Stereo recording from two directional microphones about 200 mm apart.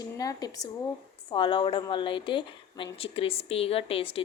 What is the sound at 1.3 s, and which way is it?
A woman's voice, 25° left (ahead or behind).